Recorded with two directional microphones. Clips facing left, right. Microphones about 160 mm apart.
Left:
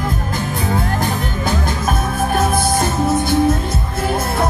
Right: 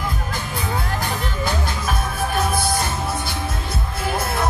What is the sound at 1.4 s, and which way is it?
Music, 45° left (ahead or behind).